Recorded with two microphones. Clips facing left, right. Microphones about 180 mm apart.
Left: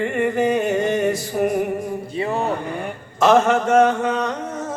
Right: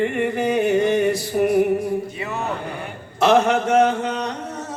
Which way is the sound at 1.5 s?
65° right (ahead or behind).